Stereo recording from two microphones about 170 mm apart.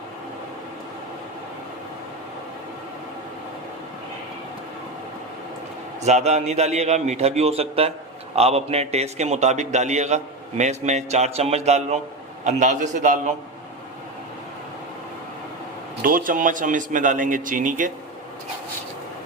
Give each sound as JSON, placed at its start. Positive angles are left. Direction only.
{"t": 6.0, "sound": "a man's voice", "side_deg": -40}
{"t": 16.0, "sound": "a man's voice", "side_deg": -55}